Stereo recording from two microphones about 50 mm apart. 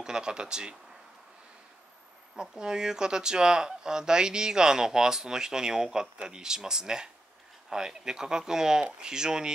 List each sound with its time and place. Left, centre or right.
0.0 s speech: centre
2.3 s speech: centre